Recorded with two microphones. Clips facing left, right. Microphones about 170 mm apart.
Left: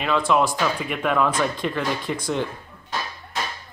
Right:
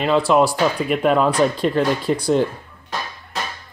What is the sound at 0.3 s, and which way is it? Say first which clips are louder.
Speech: right 4 dB; 35° right (ahead or behind).